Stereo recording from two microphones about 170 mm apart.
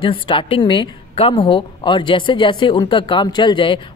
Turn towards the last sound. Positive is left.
turn(degrees=30)  # may be behind; listen again after turning